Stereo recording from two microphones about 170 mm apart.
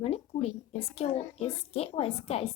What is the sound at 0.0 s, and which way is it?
A woman's voice, 35° left (ahead or behind).